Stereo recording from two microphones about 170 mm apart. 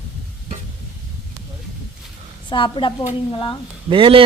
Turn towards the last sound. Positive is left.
turn(degrees=-30)  # may be behind; listen again after turning